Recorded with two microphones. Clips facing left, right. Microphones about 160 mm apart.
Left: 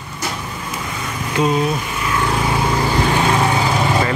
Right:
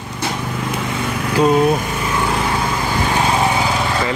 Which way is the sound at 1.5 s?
50° right (ahead or behind).